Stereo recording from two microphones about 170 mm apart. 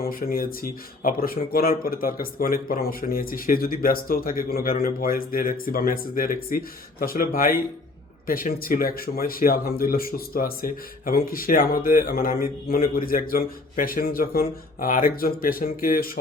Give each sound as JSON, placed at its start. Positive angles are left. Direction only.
{"t": 0.0, "sound": "speech", "side_deg": 60}